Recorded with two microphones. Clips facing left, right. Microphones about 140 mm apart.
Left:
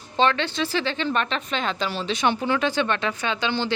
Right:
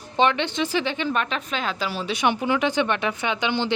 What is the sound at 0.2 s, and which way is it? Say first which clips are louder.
A woman's voice: right 1 dB; 15° right (ahead or behind).